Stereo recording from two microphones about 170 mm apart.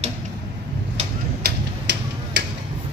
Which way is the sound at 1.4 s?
85° right.